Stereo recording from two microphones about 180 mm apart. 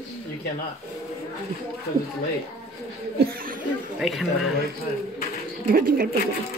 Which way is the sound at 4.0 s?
Centre (ahead or behind).